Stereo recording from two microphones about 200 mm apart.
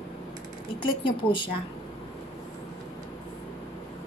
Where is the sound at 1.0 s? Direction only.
25° left (ahead or behind).